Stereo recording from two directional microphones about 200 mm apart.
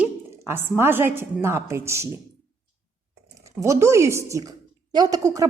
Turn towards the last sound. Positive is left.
turn(degrees=-15)  # may be behind; listen again after turning